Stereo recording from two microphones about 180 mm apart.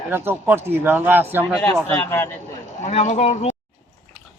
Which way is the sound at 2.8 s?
40° left (ahead or behind).